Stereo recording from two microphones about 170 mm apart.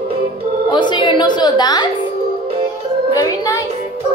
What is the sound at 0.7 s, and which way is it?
Music, 25° left (ahead or behind).